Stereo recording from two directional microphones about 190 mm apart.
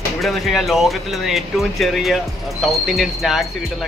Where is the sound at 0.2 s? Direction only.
Centre (ahead or behind).